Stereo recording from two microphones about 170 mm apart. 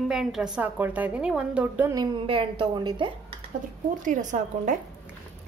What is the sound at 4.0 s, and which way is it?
Speech, 50° right (ahead or behind).